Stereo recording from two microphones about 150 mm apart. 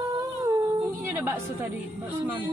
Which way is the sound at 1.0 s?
20° right (ahead or behind).